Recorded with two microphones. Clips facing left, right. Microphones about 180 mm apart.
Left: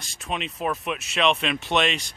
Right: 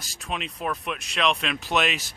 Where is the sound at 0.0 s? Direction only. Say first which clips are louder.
Left 2 dB; centre (ahead or behind).